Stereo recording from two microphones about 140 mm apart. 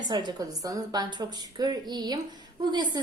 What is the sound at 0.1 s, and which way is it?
A woman's voice, 30° right (ahead or behind).